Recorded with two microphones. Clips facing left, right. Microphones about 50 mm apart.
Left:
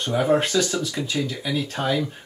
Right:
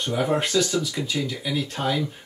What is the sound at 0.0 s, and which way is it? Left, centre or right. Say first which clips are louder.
Speech: left 3 dB; centre.